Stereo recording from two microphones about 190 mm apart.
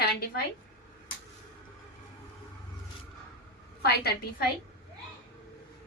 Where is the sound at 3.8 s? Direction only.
55° left (ahead or behind).